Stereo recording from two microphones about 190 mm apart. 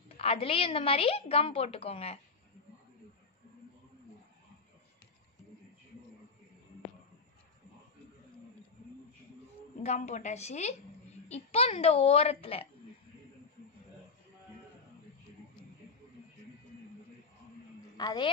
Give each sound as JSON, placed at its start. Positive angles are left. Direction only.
{"t": 0.2, "sound": "a woman's voice", "side_deg": 30}
{"t": 9.8, "sound": "a woman's voice", "side_deg": 40}
{"t": 17.9, "sound": "a woman's voice", "side_deg": 20}